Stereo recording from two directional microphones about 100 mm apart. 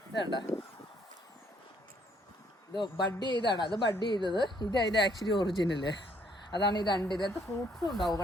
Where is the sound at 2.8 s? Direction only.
50° left (ahead or behind).